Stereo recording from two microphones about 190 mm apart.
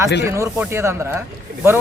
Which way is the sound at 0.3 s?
15° right (ahead or behind).